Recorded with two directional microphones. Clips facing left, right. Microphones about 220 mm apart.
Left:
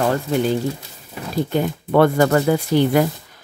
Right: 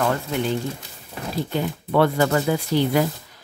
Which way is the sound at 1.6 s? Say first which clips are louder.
Left 4 dB; 50° left (ahead or behind).